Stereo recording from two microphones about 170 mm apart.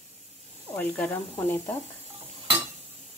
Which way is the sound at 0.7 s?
10° left (ahead or behind).